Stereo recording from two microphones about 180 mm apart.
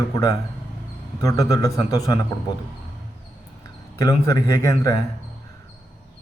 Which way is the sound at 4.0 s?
20° left (ahead or behind).